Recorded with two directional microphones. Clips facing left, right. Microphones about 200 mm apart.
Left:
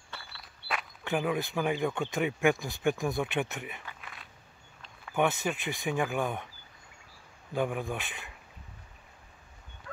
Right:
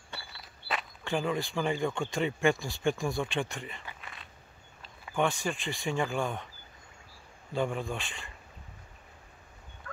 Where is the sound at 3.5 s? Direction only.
10° left (ahead or behind).